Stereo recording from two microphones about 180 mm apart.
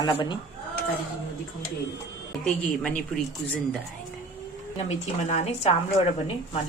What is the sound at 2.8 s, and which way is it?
Speech, 5° left (ahead or behind).